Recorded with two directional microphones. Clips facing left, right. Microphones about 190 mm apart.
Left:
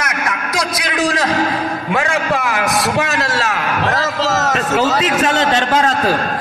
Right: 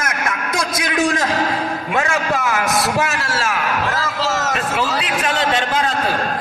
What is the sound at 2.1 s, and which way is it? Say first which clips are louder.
Speech: left 2 dB; 15° left (ahead or behind).